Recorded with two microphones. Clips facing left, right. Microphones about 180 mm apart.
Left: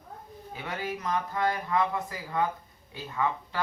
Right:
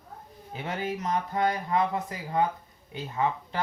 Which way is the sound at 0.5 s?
25° right (ahead or behind).